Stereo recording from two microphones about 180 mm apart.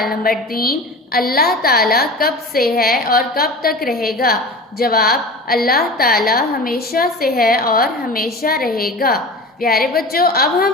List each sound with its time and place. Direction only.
0.2 s a woman's voice: 55° left (ahead or behind)